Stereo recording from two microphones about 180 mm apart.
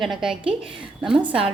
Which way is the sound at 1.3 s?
30° right (ahead or behind).